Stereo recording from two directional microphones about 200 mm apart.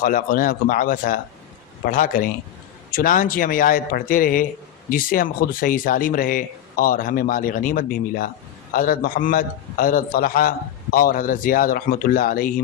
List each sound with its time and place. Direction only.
0.0 s speech: 45° left (ahead or behind)